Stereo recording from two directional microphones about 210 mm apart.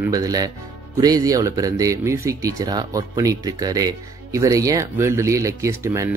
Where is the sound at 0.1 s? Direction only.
15° right (ahead or behind).